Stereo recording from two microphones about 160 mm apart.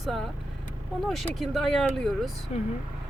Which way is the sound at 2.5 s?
45° left (ahead or behind).